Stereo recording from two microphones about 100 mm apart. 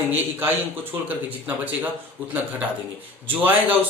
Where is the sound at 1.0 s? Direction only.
15° right (ahead or behind).